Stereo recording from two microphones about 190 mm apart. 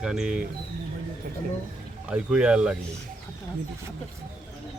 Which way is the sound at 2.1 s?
5° right (ahead or behind).